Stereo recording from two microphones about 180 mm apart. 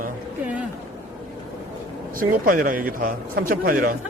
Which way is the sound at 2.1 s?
50° right (ahead or behind).